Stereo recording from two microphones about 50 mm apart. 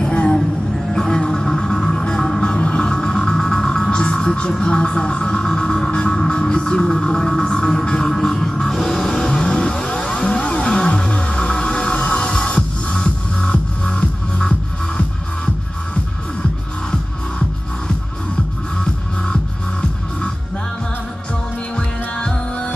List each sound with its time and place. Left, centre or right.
0.0 s music: left
21.7 s music: centre